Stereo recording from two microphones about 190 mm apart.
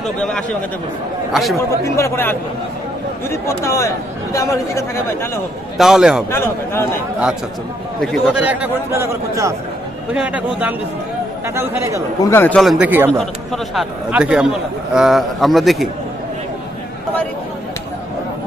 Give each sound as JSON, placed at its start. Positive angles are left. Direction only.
{"t": 0.2, "sound": "a man's voice", "side_deg": 5}
{"t": 2.0, "sound": "speech", "side_deg": 15}
{"t": 5.8, "sound": "a man's voice", "side_deg": -5}
{"t": 6.3, "sound": "speech", "side_deg": 15}
{"t": 8.0, "sound": "a man's voice", "side_deg": 0}
{"t": 12.2, "sound": "a man's voice", "side_deg": 10}
{"t": 13.2, "sound": "a man's voice", "side_deg": 0}